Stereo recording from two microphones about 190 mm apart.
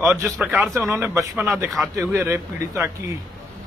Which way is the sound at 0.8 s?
15° right (ahead or behind).